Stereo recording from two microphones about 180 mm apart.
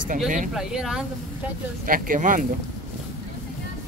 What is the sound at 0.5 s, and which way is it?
Speech, 5° right (ahead or behind).